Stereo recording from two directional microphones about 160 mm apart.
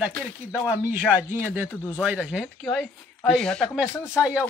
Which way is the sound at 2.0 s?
5° right (ahead or behind).